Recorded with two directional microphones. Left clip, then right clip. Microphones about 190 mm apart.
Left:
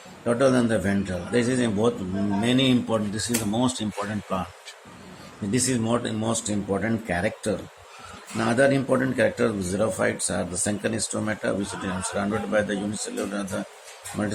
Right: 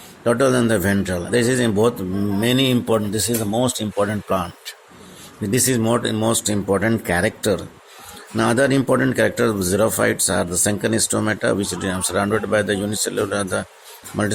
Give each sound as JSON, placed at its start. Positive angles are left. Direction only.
{"t": 0.3, "sound": "speech", "side_deg": -55}
{"t": 3.9, "sound": "speech", "side_deg": -45}